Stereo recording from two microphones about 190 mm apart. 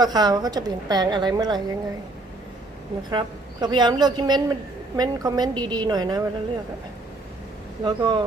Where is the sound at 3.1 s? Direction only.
25° right (ahead or behind).